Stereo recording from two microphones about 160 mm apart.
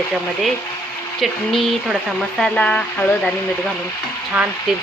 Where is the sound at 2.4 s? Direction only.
10° left (ahead or behind).